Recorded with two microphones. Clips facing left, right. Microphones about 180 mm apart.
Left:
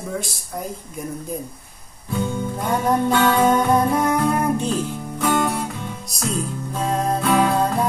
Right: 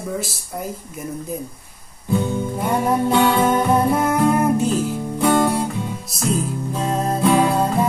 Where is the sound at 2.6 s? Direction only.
5° right (ahead or behind).